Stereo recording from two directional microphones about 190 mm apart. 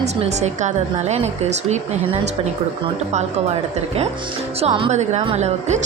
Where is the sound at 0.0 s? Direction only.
35° right (ahead or behind).